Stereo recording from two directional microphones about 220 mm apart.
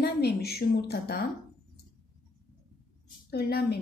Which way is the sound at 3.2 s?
45° left (ahead or behind).